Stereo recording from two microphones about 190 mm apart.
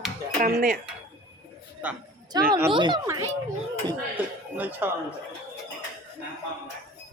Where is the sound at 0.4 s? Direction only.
45° right (ahead or behind).